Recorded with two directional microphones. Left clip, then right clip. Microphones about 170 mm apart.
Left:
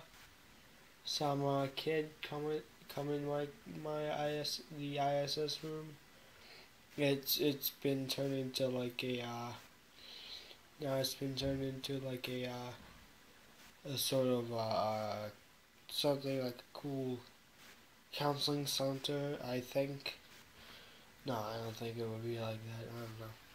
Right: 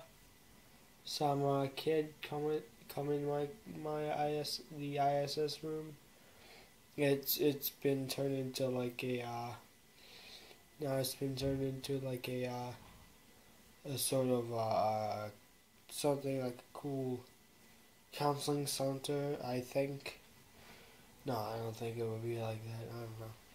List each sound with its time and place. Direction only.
1.2 s speech: 10° right (ahead or behind)
7.0 s speech: 5° right (ahead or behind)
11.3 s speech: 15° right (ahead or behind)
13.8 s speech: 5° right (ahead or behind)
18.1 s speech: 5° right (ahead or behind)
21.3 s speech: 10° right (ahead or behind)